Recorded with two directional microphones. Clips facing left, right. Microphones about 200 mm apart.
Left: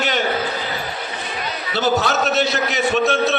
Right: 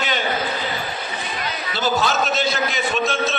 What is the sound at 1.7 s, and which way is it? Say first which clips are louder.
A man's voice: left 2 dB; 65° left (ahead or behind).